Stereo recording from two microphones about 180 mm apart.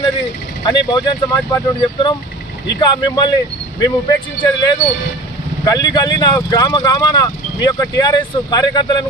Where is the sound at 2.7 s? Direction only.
25° left (ahead or behind).